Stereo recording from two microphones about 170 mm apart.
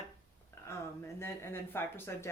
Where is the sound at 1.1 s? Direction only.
15° left (ahead or behind).